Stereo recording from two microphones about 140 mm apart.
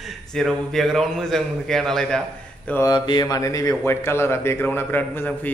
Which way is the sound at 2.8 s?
30° left (ahead or behind).